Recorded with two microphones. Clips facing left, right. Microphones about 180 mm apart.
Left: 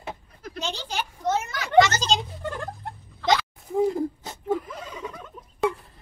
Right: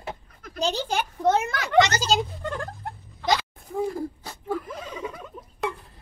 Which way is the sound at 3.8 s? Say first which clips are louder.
Left 5 dB; 20° left (ahead or behind).